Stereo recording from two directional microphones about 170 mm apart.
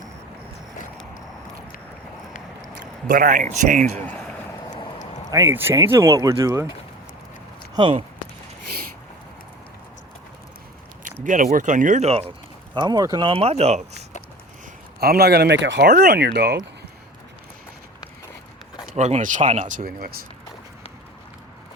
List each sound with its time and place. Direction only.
3.1 s speech: 50° right (ahead or behind)
4.0 s a sound: 5° left (ahead or behind)
5.3 s speech: 20° right (ahead or behind)
7.8 s speech: 30° right (ahead or behind)
11.0 s a sound: 50° right (ahead or behind)
11.5 s speech: 50° right (ahead or behind)
12.7 s speech: 25° right (ahead or behind); by 14.0 s 40° right (ahead or behind)
15.0 s speech: 65° right (ahead or behind)
18.9 s speech: 40° right (ahead or behind); by 20.2 s 60° right (ahead or behind)